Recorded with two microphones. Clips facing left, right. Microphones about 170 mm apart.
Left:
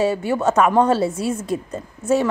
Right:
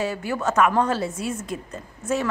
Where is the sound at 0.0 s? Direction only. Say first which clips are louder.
Left 6 dB; 25° left (ahead or behind).